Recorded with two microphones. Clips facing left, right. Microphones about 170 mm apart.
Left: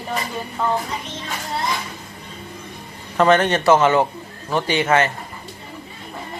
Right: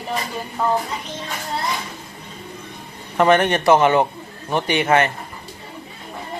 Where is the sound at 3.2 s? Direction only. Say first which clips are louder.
Even; 15° right (ahead or behind).